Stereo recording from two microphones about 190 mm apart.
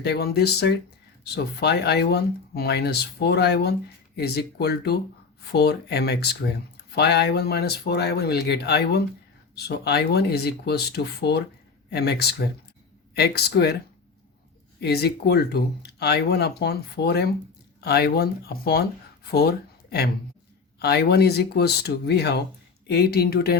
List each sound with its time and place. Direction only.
0.0 s speech: 55° left (ahead or behind)
14.8 s speech: 55° left (ahead or behind)